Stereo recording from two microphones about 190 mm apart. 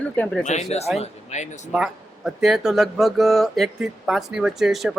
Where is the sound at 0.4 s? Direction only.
35° left (ahead or behind).